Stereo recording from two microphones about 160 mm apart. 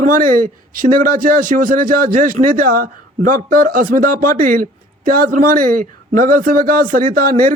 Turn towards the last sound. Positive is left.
turn(degrees=-60)  # may be behind; listen again after turning